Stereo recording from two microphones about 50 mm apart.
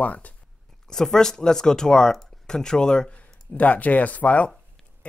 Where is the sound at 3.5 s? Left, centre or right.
Left.